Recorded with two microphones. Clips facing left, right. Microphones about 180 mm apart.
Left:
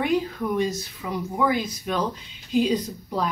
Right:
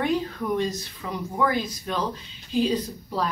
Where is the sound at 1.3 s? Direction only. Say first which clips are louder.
Left 1 dB; 10° left (ahead or behind).